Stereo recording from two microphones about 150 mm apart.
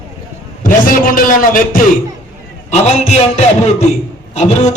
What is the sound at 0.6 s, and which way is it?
A man's voice, 65° left (ahead or behind).